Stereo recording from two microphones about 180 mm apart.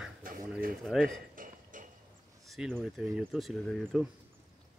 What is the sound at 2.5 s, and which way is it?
Speech, centre (ahead or behind).